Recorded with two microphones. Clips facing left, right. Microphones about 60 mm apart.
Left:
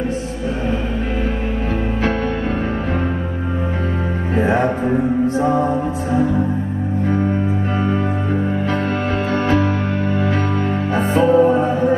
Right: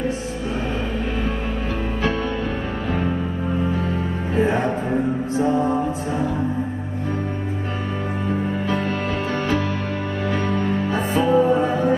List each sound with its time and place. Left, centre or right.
10.9 s music: left